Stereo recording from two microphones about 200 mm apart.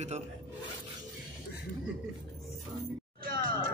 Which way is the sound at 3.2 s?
45° right (ahead or behind).